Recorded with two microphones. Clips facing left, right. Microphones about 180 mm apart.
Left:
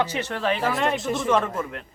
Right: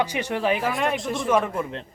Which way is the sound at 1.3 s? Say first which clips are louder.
Right 1 dB; 10° right (ahead or behind).